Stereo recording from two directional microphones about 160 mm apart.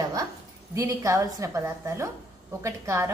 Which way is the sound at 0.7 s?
20° right (ahead or behind).